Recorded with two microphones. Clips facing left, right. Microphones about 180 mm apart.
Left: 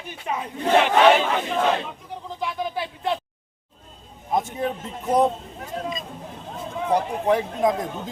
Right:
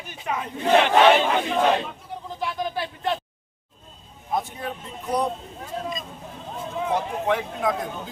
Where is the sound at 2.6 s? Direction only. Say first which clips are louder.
Even; 5° left (ahead or behind).